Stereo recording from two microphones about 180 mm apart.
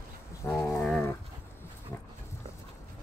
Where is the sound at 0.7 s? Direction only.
Centre (ahead or behind).